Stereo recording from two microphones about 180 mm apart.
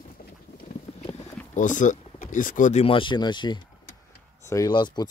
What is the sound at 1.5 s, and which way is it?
Speech, 45° left (ahead or behind).